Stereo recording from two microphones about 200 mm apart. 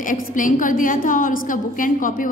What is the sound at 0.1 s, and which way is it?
A woman's voice, 40° left (ahead or behind).